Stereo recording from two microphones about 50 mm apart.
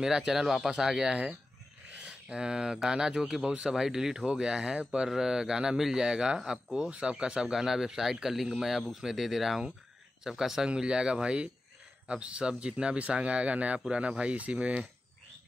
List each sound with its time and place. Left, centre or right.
0.0 s speech: centre
2.0 s a sound: right
2.9 s speech: centre